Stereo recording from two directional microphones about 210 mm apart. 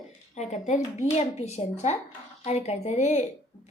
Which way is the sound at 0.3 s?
35° left (ahead or behind).